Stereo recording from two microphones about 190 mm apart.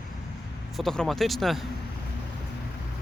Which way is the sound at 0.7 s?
Centre (ahead or behind).